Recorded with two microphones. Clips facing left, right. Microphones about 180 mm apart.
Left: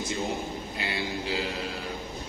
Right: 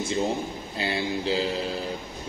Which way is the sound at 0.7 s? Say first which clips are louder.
Right 6 dB; 30° right (ahead or behind).